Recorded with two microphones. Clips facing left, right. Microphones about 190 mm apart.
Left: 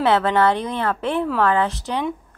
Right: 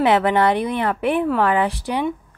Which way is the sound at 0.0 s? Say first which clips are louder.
Right 1 dB; 15° right (ahead or behind).